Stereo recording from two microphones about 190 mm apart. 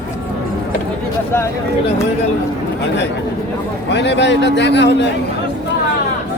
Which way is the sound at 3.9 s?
65° left (ahead or behind).